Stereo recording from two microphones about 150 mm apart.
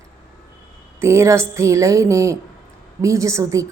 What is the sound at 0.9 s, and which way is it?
A woman's voice, 20° right (ahead or behind).